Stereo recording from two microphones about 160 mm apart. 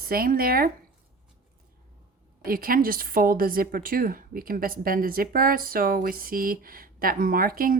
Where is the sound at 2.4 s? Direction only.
65° right (ahead or behind).